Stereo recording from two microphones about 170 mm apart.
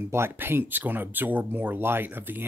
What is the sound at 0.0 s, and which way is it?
Speech, 15° right (ahead or behind).